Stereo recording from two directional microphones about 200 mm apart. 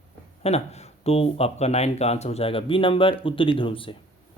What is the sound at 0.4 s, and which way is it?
Speech, 30° left (ahead or behind).